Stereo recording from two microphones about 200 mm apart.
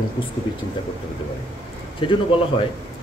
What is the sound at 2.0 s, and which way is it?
Speech, 25° left (ahead or behind).